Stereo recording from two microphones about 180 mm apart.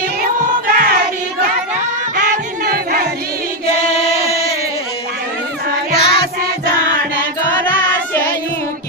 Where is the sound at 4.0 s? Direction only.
35° left (ahead or behind).